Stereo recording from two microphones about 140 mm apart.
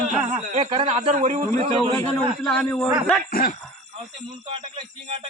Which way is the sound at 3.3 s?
90° left.